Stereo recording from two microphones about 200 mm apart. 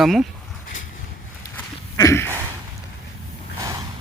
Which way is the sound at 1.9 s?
15° left (ahead or behind).